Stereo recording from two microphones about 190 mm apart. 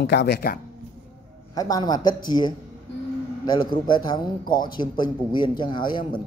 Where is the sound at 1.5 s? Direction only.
20° left (ahead or behind).